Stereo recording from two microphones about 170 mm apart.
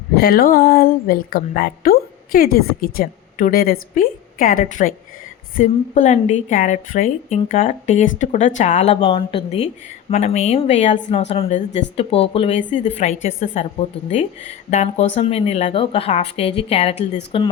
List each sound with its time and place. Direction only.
0.2 s a woman's voice: 65° left (ahead or behind); by 17.5 s 30° left (ahead or behind)